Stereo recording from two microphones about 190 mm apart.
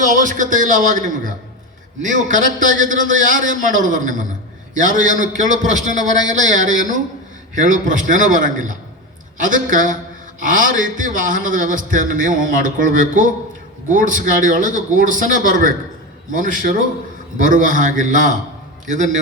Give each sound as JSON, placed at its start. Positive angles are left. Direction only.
{"t": 0.0, "sound": "a man's voice", "side_deg": -40}